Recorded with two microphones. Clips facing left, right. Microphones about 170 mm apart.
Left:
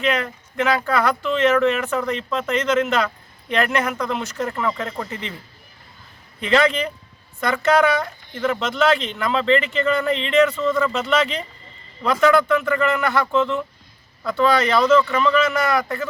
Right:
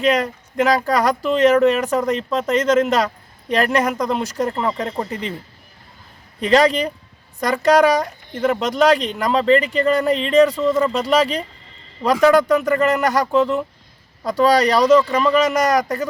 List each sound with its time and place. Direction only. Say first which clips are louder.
0.0 s speech: right 4 dB; 35° right (ahead or behind)
6.4 s speech: right 3 dB; 35° right (ahead or behind)